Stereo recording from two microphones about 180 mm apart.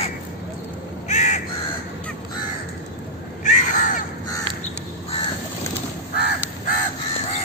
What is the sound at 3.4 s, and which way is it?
Crow, 40° left (ahead or behind).